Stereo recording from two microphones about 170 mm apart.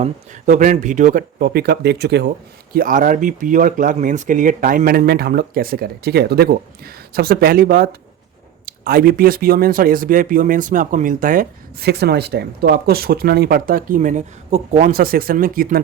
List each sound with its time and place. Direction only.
0.0 s speech: 50° right (ahead or behind); by 2.3 s 75° right (ahead or behind)
2.7 s speech: 55° right (ahead or behind)
11.9 s speech: 75° right (ahead or behind); by 15.8 s 55° right (ahead or behind)